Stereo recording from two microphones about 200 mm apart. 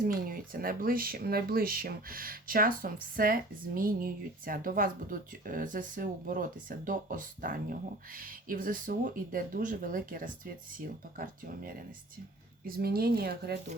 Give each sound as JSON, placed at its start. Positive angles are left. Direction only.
{"t": 0.3, "sound": "speech", "side_deg": -45}